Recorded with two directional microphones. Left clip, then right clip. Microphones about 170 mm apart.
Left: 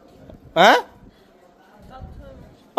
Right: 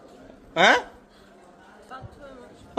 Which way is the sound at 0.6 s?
30° left (ahead or behind).